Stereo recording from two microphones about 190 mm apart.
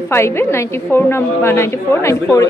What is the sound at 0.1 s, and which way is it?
A woman's voice, 15° left (ahead or behind).